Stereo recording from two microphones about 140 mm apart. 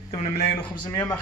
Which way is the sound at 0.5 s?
35° left (ahead or behind).